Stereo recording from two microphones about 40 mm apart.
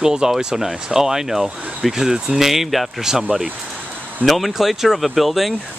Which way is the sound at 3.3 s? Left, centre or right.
Right.